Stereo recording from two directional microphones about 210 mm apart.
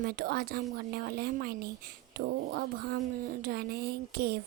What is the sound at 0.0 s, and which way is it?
A woman's voice, 45° right (ahead or behind).